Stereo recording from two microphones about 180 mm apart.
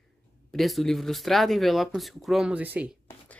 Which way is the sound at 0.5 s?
Centre (ahead or behind).